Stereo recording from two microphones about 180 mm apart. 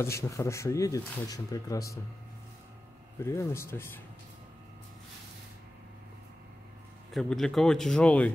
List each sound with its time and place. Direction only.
0.0 s speech: 15° left (ahead or behind)
3.3 s speech: 15° left (ahead or behind)
7.2 s speech: centre (ahead or behind)